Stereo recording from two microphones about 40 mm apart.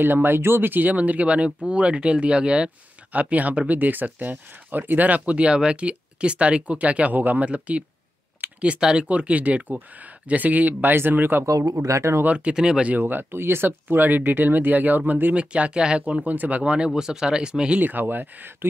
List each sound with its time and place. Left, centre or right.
0.0 s speech: right
3.1 s speech: right
7.4 s speech: right
10.8 s speech: right
12.3 s speech: right
12.5 s speech: centre
13.0 s speech: right
13.7 s speech: right
15.3 s speech: right
16.3 s speech: right
16.6 s speech: right
16.9 s speech: centre
17.7 s speech: right